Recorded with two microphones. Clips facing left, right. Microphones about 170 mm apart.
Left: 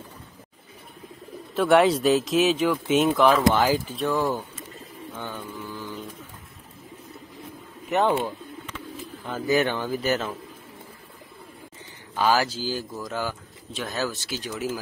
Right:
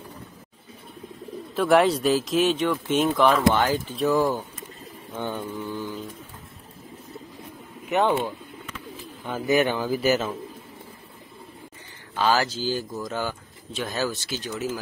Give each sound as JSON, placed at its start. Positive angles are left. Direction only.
{"t": 1.5, "sound": "speech", "side_deg": 0}
{"t": 4.1, "sound": "speech", "side_deg": -15}
{"t": 5.2, "sound": "mantra", "side_deg": -20}
{"t": 7.9, "sound": "speech", "side_deg": 0}
{"t": 9.5, "sound": "mantra", "side_deg": -20}
{"t": 9.8, "sound": "speech", "side_deg": -5}
{"t": 12.2, "sound": "speech", "side_deg": 10}